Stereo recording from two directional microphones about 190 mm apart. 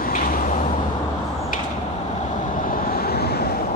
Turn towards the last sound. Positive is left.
turn(degrees=55)  # may be behind; listen again after turning